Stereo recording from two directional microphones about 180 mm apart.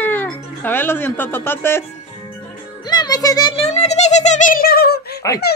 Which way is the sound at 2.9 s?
20° left (ahead or behind).